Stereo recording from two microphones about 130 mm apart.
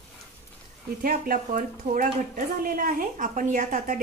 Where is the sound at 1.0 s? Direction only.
90° right.